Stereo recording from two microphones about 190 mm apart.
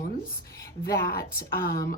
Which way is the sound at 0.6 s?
15° left (ahead or behind).